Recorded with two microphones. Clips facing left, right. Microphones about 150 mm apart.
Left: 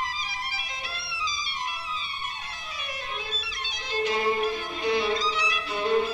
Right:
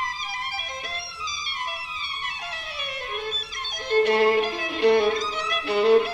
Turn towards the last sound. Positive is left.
turn(degrees=-70)  # may be behind; listen again after turning